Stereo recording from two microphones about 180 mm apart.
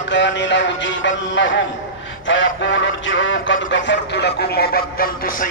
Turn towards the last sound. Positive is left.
turn(degrees=55)  # may be behind; listen again after turning